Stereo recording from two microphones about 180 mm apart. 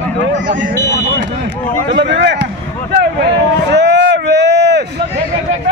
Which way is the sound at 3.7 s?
70° right (ahead or behind).